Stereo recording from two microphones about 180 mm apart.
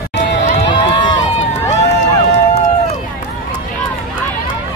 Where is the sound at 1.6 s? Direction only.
40° left (ahead or behind).